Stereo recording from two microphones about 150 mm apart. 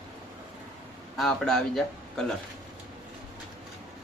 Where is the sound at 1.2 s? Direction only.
Centre (ahead or behind).